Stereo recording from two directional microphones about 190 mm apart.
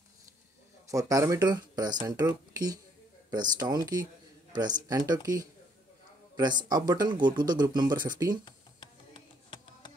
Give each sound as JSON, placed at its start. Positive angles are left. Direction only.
{"t": 0.8, "sound": "speech", "side_deg": -15}
{"t": 8.5, "sound": "music", "side_deg": 25}